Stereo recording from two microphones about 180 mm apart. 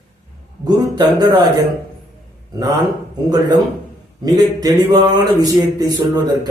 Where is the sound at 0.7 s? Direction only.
20° right (ahead or behind).